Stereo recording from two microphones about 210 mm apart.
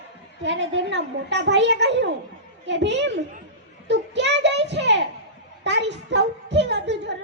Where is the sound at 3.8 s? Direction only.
55° right (ahead or behind).